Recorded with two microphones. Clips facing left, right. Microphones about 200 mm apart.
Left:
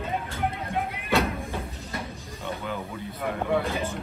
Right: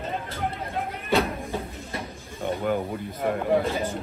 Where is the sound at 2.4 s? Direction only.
50° right (ahead or behind).